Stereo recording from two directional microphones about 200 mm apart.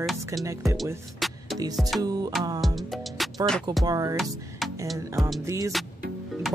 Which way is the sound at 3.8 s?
15° right (ahead or behind).